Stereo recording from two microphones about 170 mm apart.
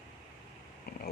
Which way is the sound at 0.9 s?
65° left (ahead or behind).